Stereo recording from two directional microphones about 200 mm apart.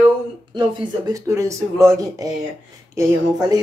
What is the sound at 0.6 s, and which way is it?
A woman's voice, 20° right (ahead or behind).